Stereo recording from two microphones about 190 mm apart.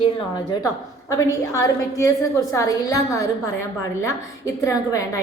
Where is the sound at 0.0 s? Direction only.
20° left (ahead or behind).